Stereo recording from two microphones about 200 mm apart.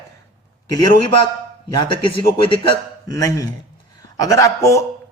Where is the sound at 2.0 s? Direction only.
25° left (ahead or behind).